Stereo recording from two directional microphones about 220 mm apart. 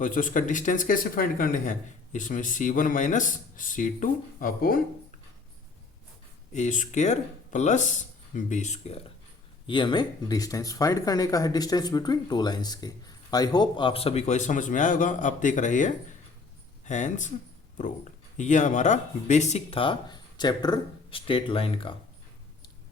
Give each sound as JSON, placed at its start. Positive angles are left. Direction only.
{"t": 0.0, "sound": "speech", "side_deg": 35}
{"t": 6.5, "sound": "speech", "side_deg": 35}